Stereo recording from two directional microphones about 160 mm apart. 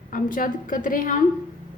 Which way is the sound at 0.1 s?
60° left (ahead or behind).